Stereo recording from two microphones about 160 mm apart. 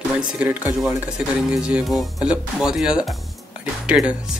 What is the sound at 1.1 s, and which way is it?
Speech, 5° right (ahead or behind).